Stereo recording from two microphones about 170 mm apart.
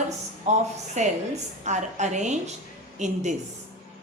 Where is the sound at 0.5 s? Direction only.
45° right (ahead or behind).